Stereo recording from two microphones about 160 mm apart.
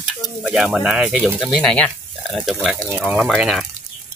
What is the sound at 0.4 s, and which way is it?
Speech, 5° right (ahead or behind).